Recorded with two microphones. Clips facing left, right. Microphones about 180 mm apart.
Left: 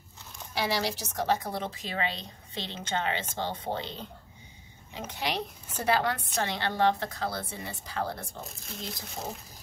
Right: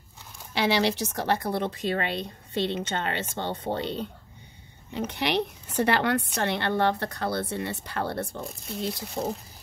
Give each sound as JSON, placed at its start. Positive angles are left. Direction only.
{"t": 0.6, "sound": "a woman's voice", "side_deg": -70}